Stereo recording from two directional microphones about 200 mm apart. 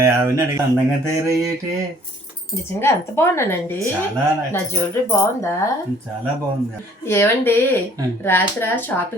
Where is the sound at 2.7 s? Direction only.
10° left (ahead or behind).